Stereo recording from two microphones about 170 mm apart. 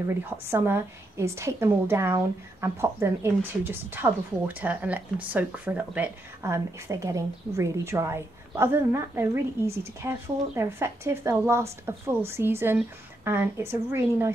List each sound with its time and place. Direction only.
0.5 s a woman's voice: 15° right (ahead or behind)